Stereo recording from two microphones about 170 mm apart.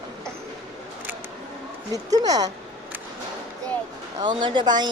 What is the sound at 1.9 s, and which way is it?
Speech, 20° right (ahead or behind).